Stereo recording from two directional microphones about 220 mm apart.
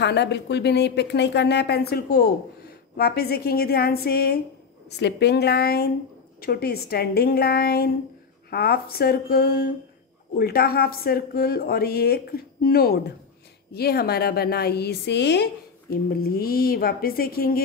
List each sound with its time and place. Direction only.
0.0 s speech: 50° left (ahead or behind)